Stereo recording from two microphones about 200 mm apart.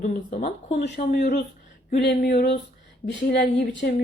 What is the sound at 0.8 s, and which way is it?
A woman's voice, 50° left (ahead or behind).